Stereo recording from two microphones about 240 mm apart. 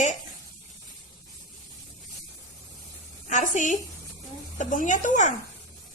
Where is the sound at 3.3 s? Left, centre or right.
Left.